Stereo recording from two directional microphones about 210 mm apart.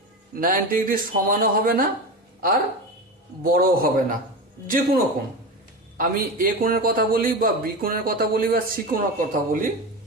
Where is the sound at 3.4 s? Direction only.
45° right (ahead or behind).